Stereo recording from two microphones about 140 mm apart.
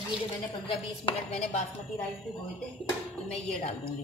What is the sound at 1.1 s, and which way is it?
Speech, 45° left (ahead or behind).